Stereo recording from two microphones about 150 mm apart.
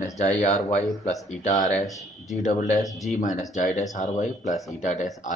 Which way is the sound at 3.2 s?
55° left (ahead or behind).